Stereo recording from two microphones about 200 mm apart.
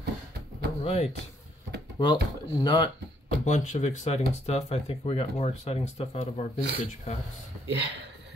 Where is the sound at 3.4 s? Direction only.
35° left (ahead or behind).